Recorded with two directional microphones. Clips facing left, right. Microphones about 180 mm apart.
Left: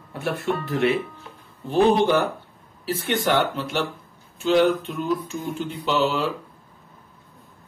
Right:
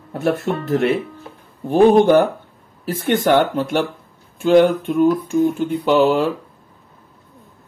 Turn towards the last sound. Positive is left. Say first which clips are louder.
# right 8 dB
turn(degrees=-50)  # may be behind; listen again after turning